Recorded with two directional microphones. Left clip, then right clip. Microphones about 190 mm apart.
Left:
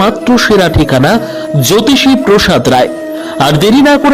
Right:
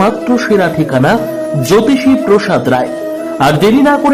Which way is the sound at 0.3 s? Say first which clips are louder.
Left 3 dB; 25° left (ahead or behind).